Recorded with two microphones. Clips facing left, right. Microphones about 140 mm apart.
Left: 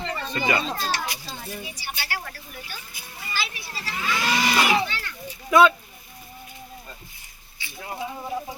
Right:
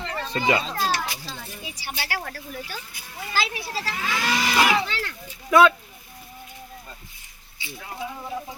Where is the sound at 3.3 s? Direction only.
90° right.